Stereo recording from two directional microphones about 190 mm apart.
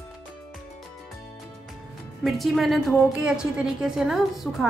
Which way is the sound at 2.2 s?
Centre (ahead or behind).